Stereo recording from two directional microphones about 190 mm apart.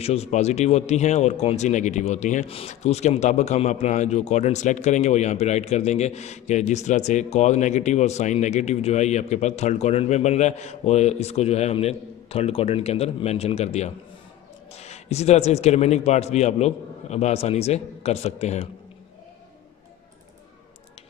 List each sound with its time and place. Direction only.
0.0 s speech: 35° left (ahead or behind)